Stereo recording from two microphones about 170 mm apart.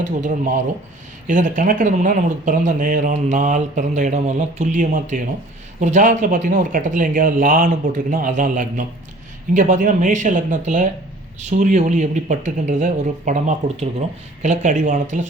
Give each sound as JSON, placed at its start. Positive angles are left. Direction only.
{"t": 1.3, "sound": "speech", "side_deg": -50}